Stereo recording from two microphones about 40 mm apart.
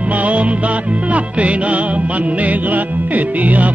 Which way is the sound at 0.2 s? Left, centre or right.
Right.